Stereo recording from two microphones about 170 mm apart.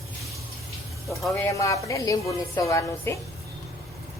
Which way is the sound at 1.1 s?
Centre (ahead or behind).